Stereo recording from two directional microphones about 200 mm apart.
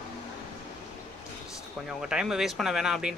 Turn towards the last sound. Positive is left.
turn(degrees=-5)  # may be behind; listen again after turning